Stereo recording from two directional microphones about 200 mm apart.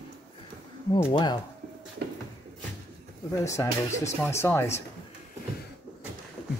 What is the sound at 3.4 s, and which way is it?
Speech, 15° left (ahead or behind).